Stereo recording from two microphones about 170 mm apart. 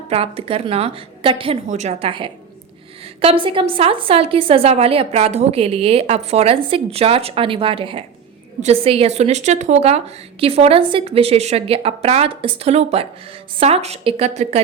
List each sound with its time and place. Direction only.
0.1 s a woman's voice: 35° right (ahead or behind)
1.6 s a woman's voice: 45° right (ahead or behind)